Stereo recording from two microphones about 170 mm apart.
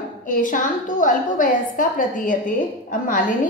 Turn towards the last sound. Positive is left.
turn(degrees=50)  # may be behind; listen again after turning